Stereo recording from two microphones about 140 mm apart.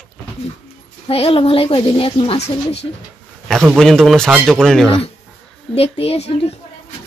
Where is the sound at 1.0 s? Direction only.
45° left (ahead or behind).